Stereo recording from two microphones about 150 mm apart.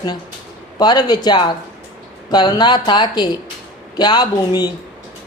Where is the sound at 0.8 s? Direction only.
25° left (ahead or behind).